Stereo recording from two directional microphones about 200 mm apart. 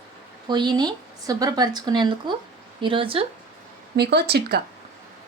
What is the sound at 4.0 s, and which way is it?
Speech, 55° right (ahead or behind).